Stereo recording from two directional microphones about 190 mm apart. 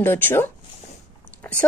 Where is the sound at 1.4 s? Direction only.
5° left (ahead or behind).